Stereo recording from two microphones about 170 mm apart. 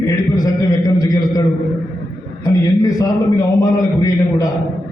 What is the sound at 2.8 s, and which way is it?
A man's voice, 20° left (ahead or behind).